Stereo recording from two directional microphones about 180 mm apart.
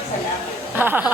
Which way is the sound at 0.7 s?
10° right (ahead or behind).